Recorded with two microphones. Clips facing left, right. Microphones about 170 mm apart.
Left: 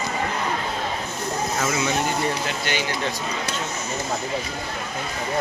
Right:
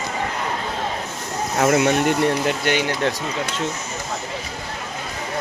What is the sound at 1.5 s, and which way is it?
Speech, 60° right (ahead or behind).